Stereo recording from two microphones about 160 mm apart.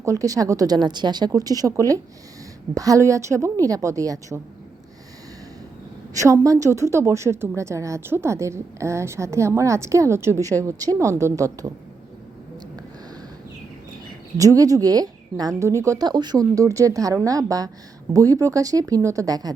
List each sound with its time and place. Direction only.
0.0 s speech: 20° right (ahead or behind)
6.1 s a woman's voice: 20° right (ahead or behind)
14.3 s speech: 20° right (ahead or behind)